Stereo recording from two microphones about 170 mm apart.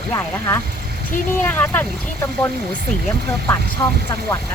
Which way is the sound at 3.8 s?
15° left (ahead or behind).